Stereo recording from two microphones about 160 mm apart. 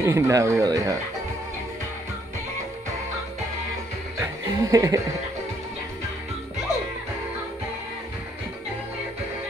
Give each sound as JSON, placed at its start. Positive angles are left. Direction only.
{"t": 0.0, "sound": "speech", "side_deg": -20}
{"t": 4.2, "sound": "music", "side_deg": -20}